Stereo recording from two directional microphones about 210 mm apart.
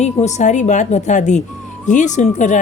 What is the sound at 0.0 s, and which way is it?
A woman's voice, 35° left (ahead or behind).